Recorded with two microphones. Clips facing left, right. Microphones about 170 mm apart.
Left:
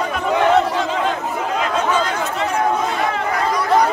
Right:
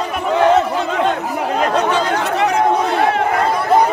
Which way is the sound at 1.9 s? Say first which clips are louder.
Right 3 dB; 65° right (ahead or behind).